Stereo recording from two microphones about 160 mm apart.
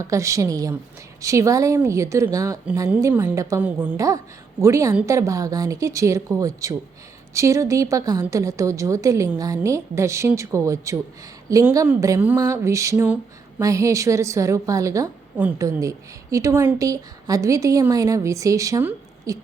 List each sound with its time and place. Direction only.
0.0 s a woman's voice: 20° right (ahead or behind)